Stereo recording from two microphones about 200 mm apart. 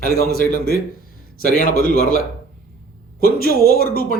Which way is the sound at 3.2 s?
45° left (ahead or behind).